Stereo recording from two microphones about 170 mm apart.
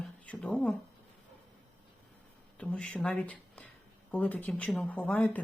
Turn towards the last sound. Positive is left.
turn(degrees=10)  # may be behind; listen again after turning